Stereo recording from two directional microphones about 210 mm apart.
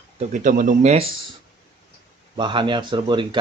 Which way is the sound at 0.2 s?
40° right (ahead or behind).